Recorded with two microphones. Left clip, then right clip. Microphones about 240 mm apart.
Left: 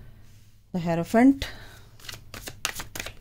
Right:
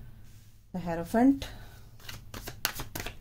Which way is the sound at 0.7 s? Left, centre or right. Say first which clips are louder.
Left 6 dB; left.